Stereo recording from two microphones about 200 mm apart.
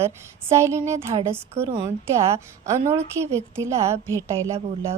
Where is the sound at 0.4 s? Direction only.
15° right (ahead or behind).